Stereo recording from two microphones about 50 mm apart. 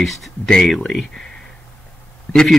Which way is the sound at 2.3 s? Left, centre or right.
Centre.